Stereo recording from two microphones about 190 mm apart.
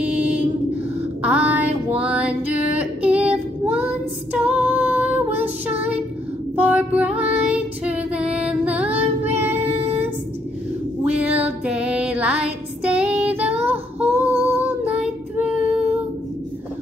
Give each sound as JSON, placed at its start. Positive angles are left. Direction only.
{"t": 0.0, "sound": "a sound", "side_deg": -5}
{"t": 6.5, "sound": "female singing", "side_deg": -10}
{"t": 9.4, "sound": "child singing", "side_deg": -10}
{"t": 11.1, "sound": "female singing", "side_deg": -5}
{"t": 13.4, "sound": "child singing", "side_deg": -10}